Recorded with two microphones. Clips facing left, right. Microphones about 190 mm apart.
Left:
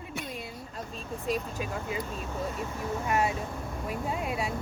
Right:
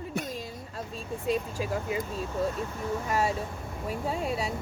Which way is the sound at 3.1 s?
35° right (ahead or behind).